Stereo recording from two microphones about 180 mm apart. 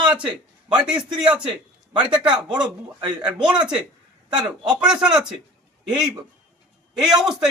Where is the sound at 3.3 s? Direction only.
5° right (ahead or behind).